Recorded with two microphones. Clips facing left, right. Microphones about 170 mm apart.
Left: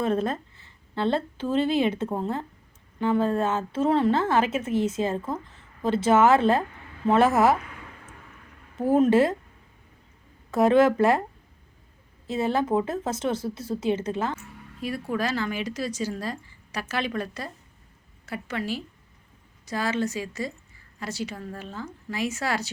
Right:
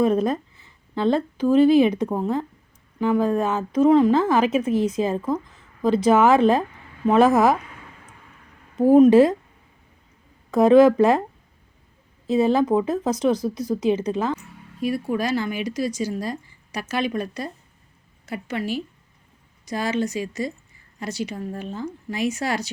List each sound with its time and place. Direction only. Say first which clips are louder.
0.0 s speech: right 5 dB; 15° right (ahead or behind)
4.7 s speech: right 3 dB; 25° left (ahead or behind)
4.9 s speech: right 4 dB; 15° right (ahead or behind)
5.8 s speech: right 5 dB; 25° left (ahead or behind)
6.1 s speech: right 2 dB; 15° right (ahead or behind)
9.0 s speech: right 6 dB; 15° right (ahead or behind)
10.5 s speech: right 5 dB; 15° right (ahead or behind)
12.3 s speech: right 6 dB; 15° right (ahead or behind)